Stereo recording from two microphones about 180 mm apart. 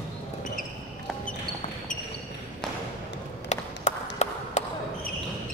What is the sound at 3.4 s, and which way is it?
Clapping, 40° left (ahead or behind).